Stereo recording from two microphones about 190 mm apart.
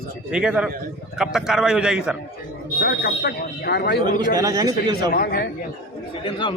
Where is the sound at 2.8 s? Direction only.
55° left (ahead or behind).